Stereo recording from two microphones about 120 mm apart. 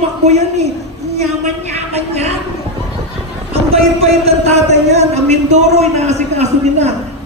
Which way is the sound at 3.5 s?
55° right (ahead or behind).